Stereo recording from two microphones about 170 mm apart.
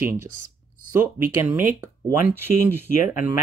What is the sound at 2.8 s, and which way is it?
Speech, 45° left (ahead or behind).